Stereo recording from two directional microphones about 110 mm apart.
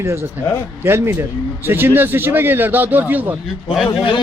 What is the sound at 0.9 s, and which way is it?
Speech, 20° right (ahead or behind).